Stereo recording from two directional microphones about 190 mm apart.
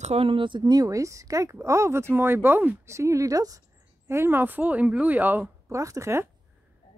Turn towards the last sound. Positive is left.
turn(degrees=-15)  # may be behind; listen again after turning